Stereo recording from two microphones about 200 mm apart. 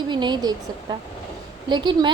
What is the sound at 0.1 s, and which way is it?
A woman's voice, 20° right (ahead or behind).